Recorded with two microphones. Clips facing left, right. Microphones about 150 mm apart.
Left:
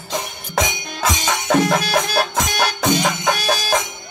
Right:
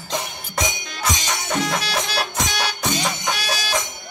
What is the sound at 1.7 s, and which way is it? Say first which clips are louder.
Music: left 6 dB; 50° left (ahead or behind).